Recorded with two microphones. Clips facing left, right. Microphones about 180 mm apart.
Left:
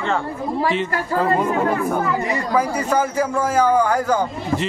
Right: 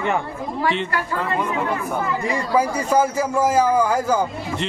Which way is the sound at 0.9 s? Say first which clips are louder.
Left 5 dB; 40° left (ahead or behind).